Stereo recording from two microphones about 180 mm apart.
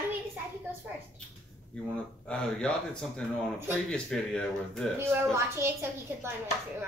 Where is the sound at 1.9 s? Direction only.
5° left (ahead or behind).